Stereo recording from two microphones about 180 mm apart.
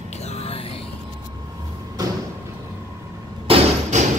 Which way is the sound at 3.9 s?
40° right (ahead or behind).